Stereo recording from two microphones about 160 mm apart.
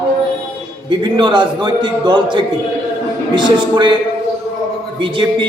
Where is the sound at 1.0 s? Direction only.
30° right (ahead or behind).